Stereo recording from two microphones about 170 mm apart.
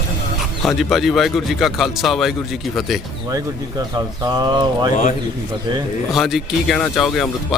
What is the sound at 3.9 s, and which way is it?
Speech, 20° right (ahead or behind).